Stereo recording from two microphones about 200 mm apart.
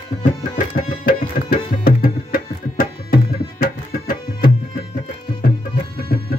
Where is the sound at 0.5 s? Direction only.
45° left (ahead or behind).